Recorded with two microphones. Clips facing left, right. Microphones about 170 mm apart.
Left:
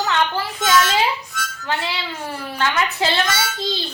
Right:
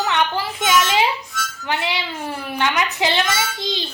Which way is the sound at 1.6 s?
20° right (ahead or behind).